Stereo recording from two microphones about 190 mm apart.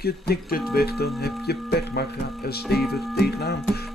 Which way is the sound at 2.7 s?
Centre (ahead or behind).